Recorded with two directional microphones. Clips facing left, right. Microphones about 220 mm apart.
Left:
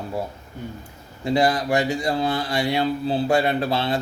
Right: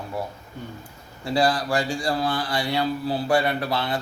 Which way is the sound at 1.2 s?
20° left (ahead or behind).